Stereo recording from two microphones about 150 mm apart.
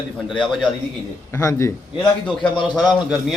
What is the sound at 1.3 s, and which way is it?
Speech, 20° left (ahead or behind).